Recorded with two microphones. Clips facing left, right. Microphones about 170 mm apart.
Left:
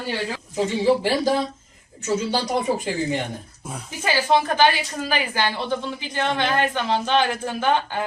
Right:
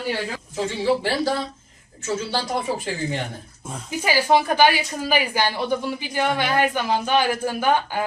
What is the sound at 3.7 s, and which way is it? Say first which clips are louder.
Speech: even; 5° left (ahead or behind).